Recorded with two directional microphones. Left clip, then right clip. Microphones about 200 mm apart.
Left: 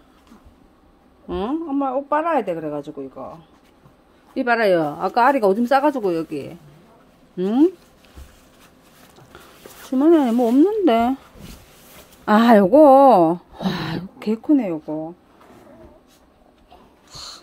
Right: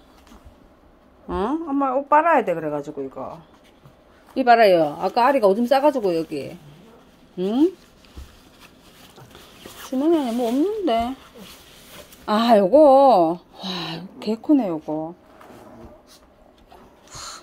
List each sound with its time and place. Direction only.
1.3 s a woman's voice: 15° left (ahead or behind)
9.8 s speech: 35° left (ahead or behind)
12.3 s speech: 35° left (ahead or behind)
16.7 s a sound: 10° left (ahead or behind)